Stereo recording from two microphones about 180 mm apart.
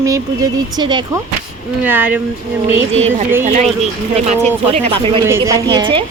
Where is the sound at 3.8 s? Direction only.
40° right (ahead or behind).